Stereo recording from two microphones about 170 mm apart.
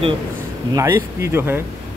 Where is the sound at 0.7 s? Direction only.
15° right (ahead or behind).